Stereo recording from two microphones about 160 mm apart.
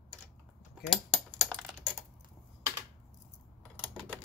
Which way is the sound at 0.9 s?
5° left (ahead or behind).